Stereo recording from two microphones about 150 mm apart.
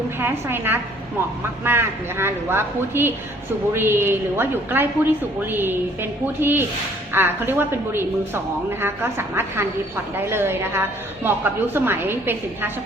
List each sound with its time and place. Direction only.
0.2 s a woman's voice: 15° right (ahead or behind)